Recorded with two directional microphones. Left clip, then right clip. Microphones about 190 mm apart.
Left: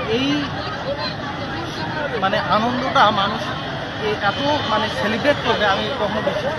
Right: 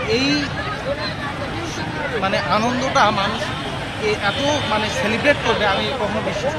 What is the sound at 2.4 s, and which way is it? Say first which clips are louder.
Speech: even; 15° right (ahead or behind).